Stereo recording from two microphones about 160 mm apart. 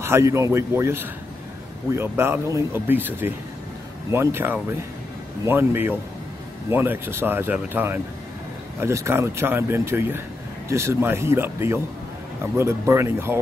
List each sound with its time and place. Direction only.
0.0 s speech: 15° right (ahead or behind)